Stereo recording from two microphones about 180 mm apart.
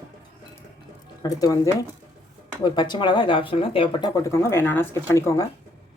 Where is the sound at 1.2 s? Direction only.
20° left (ahead or behind).